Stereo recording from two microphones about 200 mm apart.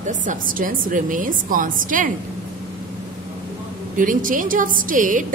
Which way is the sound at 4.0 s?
40° right (ahead or behind).